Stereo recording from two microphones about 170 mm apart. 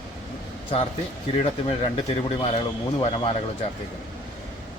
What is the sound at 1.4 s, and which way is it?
Speech, 35° left (ahead or behind).